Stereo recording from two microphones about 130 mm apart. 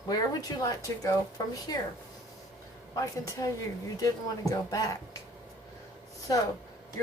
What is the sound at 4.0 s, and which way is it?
Speech, 25° left (ahead or behind).